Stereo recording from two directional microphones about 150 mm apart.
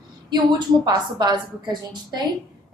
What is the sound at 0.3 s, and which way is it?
A woman's voice, 30° right (ahead or behind).